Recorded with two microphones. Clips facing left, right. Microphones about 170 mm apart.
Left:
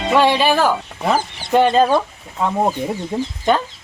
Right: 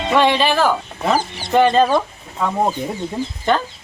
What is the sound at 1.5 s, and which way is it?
Speech, 10° left (ahead or behind).